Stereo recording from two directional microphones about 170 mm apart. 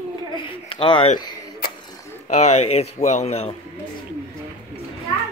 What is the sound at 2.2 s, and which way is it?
A man's voice, 40° left (ahead or behind).